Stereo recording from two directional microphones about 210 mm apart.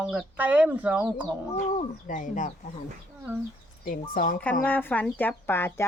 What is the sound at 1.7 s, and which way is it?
Speech, 35° left (ahead or behind).